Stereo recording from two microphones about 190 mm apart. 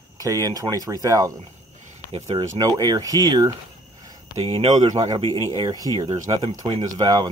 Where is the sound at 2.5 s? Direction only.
20° right (ahead or behind).